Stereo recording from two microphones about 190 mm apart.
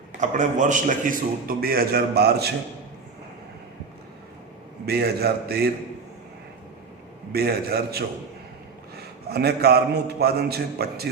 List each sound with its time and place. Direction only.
0.2 s a man's voice: 40° right (ahead or behind); by 2.5 s 55° right (ahead or behind)
4.9 s a man's voice: 55° right (ahead or behind)
7.3 s a man's voice: 55° right (ahead or behind)
9.3 s a man's voice: 55° right (ahead or behind)